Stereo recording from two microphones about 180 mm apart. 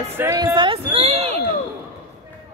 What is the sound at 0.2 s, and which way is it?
Speech, 20° right (ahead or behind).